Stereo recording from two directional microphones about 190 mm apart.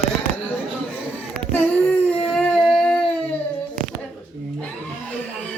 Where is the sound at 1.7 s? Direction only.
10° left (ahead or behind).